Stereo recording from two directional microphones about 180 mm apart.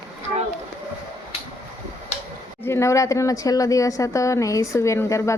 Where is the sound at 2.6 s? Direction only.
15° left (ahead or behind).